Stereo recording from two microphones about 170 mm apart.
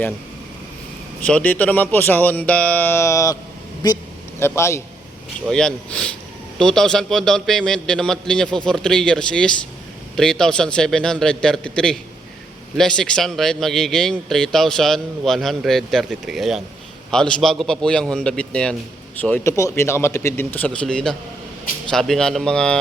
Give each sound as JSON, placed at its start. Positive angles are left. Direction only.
{"t": 1.2, "sound": "speech", "side_deg": 10}
{"t": 4.4, "sound": "a man's voice", "side_deg": 15}
{"t": 5.5, "sound": "a man's voice", "side_deg": 5}